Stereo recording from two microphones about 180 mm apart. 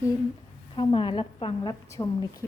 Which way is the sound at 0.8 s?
25° left (ahead or behind).